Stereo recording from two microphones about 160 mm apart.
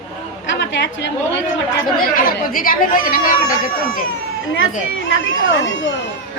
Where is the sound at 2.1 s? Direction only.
60° left (ahead or behind).